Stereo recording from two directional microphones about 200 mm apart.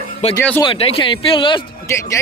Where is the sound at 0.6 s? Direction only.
25° left (ahead or behind).